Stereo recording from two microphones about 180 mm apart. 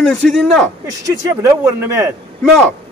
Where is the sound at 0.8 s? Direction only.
20° right (ahead or behind).